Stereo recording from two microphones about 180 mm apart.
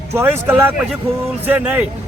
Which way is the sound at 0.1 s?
10° right (ahead or behind).